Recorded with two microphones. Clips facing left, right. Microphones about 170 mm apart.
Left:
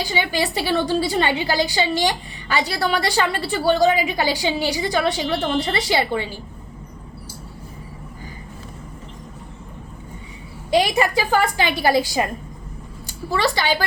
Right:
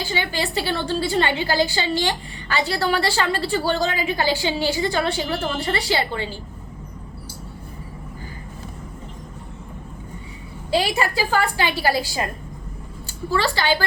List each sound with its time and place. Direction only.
0.0 s a woman's voice: 15° left (ahead or behind)
10.7 s a woman's voice: 20° left (ahead or behind)